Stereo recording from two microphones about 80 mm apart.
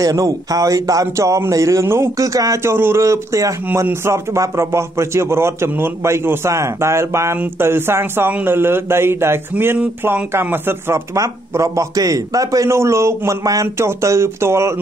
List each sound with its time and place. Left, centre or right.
0.0 s speech: right
2.2 s speech: right
2.7 s speech: right
11.1 s speech: right